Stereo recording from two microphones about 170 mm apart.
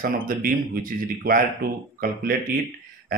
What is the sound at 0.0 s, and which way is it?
Speech, 55° right (ahead or behind).